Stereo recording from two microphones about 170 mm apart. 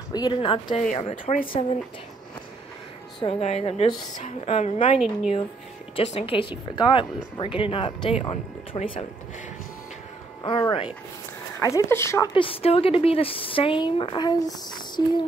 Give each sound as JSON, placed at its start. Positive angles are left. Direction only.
{"t": 0.1, "sound": "speech", "side_deg": 25}
{"t": 0.7, "sound": "speech", "side_deg": 45}
{"t": 3.2, "sound": "speech", "side_deg": 35}
{"t": 4.9, "sound": "a woman's voice", "side_deg": -5}
{"t": 6.1, "sound": "speech", "side_deg": 35}
{"t": 10.4, "sound": "speech", "side_deg": 30}
{"t": 11.6, "sound": "speech", "side_deg": 15}
{"t": 12.4, "sound": "speech", "side_deg": 35}